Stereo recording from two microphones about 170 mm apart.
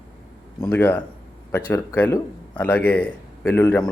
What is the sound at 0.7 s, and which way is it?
A man's voice, 10° left (ahead or behind).